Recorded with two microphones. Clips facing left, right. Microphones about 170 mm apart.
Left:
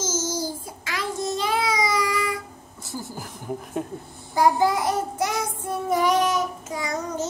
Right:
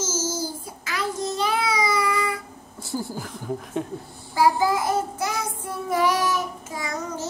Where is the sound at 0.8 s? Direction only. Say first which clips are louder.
Even; 20° left (ahead or behind).